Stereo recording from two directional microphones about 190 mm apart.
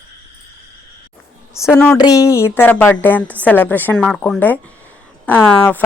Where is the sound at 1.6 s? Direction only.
10° left (ahead or behind).